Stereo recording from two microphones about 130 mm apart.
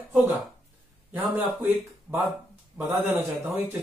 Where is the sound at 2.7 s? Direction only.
15° right (ahead or behind).